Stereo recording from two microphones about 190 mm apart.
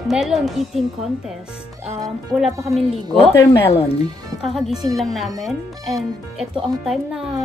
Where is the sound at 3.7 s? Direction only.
30° left (ahead or behind).